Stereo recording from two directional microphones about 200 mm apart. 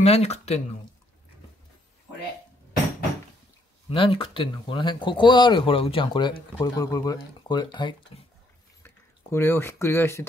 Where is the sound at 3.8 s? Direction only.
25° left (ahead or behind).